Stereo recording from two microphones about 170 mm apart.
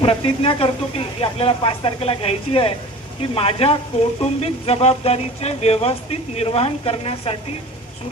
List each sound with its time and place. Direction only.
0.0 s speech: 30° left (ahead or behind)